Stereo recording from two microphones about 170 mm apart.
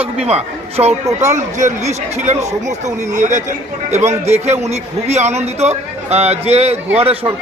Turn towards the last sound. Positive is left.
turn(degrees=-35)  # may be behind; listen again after turning